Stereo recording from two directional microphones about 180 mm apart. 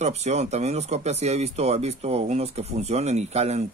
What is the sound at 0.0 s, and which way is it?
Speech, 40° right (ahead or behind).